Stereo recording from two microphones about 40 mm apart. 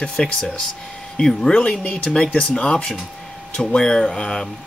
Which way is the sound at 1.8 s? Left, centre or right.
Left.